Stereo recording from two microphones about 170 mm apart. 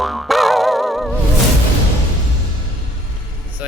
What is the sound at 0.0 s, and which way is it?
Music, centre (ahead or behind).